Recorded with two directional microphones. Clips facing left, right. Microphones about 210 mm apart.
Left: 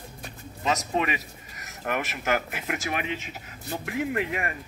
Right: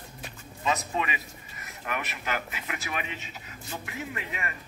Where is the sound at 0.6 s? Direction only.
45° left (ahead or behind).